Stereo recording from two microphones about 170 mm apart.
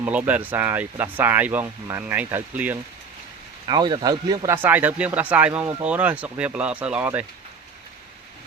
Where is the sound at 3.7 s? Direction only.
25° right (ahead or behind); by 7.2 s 10° right (ahead or behind).